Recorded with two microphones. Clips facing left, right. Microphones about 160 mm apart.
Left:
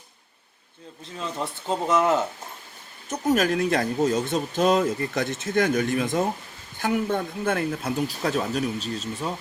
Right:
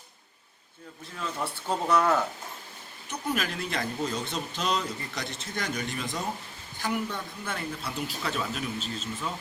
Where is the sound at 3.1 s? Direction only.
45° left (ahead or behind).